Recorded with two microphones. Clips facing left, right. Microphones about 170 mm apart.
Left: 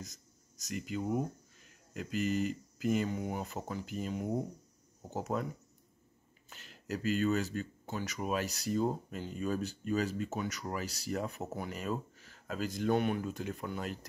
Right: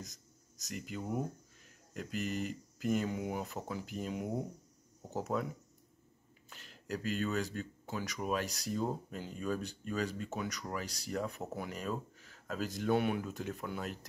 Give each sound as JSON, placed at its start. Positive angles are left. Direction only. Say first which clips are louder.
{"t": 0.0, "sound": "a sound", "louder": "left 1 dB", "side_deg": 0}
{"t": 2.0, "sound": "speech", "louder": "left 4 dB", "side_deg": 0}
{"t": 6.5, "sound": "speech", "louder": "left 1 dB", "side_deg": 0}